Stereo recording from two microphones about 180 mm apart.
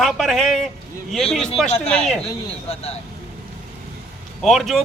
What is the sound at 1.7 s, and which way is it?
Speech, 35° left (ahead or behind).